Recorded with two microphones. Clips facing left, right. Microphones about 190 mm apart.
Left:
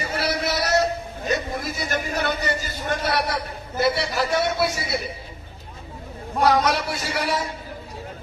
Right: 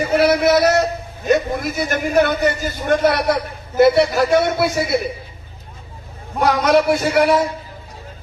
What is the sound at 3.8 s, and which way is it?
Speech, 55° right (ahead or behind).